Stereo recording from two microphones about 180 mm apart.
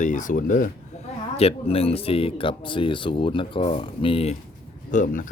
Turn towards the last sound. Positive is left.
turn(degrees=45)  # may be behind; listen again after turning